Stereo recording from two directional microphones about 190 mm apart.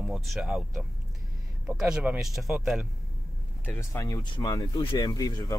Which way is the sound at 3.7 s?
15° left (ahead or behind).